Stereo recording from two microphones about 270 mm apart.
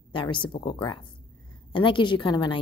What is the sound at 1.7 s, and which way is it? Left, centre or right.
Speech, centre.